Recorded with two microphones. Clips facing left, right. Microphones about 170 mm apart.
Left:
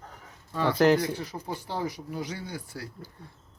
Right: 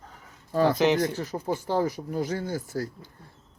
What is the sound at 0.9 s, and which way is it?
Speech, 45° right (ahead or behind).